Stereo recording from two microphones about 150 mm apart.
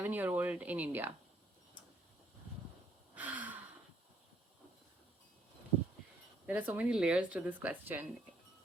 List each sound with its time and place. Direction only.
0.0 s speech: 15° right (ahead or behind)
3.2 s gasp: 10° right (ahead or behind)
6.4 s speech: 10° right (ahead or behind)